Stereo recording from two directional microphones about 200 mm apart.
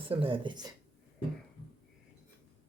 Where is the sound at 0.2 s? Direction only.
25° right (ahead or behind).